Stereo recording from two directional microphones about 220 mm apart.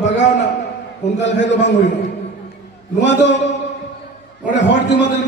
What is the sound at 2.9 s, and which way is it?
Speech, 55° left (ahead or behind).